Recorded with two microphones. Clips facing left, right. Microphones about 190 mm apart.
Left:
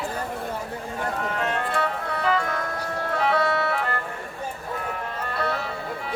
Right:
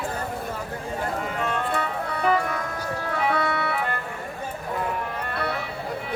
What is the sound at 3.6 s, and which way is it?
Music, 45° left (ahead or behind).